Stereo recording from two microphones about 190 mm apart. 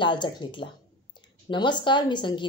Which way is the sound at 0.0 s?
25° left (ahead or behind).